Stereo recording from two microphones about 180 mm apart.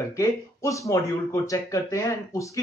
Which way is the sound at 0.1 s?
15° left (ahead or behind).